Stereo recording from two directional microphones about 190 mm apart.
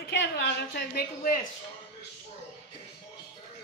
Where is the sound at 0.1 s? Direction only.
65° left (ahead or behind).